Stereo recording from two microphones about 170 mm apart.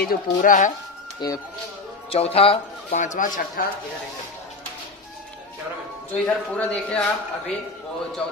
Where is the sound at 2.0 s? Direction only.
35° left (ahead or behind).